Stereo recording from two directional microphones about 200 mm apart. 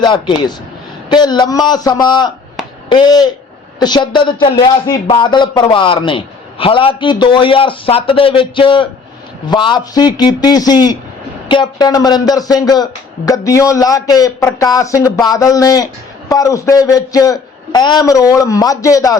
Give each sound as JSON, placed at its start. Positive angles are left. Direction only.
{"t": 0.0, "sound": "speech", "side_deg": 25}
{"t": 2.6, "sound": "a sound", "side_deg": 0}
{"t": 2.9, "sound": "speech", "side_deg": 20}